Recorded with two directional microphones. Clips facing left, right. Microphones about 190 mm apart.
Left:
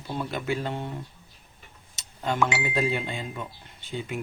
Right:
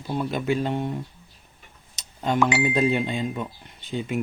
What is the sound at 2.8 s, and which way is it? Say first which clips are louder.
Speech: right 3 dB; 20° right (ahead or behind).